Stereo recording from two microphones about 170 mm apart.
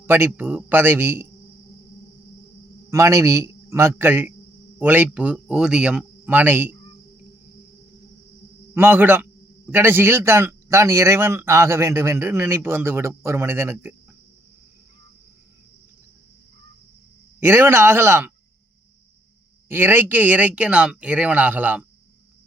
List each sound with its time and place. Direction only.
0.0 s speech: 15° right (ahead or behind)
2.9 s speech: 20° right (ahead or behind)
8.7 s speech: 15° right (ahead or behind)
17.4 s speech: 15° right (ahead or behind)
19.6 s speech: 10° right (ahead or behind)